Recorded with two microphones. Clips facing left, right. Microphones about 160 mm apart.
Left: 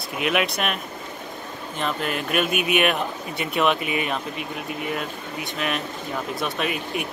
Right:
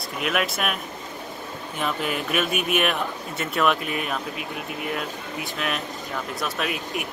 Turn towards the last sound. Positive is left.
turn(degrees=0)  # may be behind; listen again after turning